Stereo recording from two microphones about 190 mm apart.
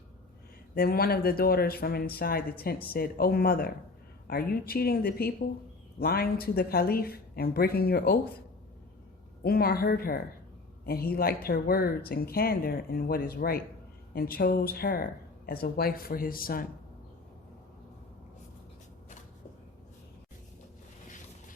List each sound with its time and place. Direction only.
0.7 s speech: 55° left (ahead or behind)
9.4 s speech: 55° left (ahead or behind)